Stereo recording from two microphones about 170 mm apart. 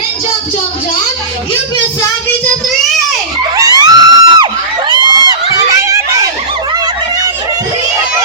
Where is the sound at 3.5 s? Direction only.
20° right (ahead or behind).